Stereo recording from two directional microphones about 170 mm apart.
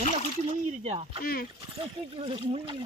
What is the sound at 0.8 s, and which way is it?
Speech, 40° right (ahead or behind).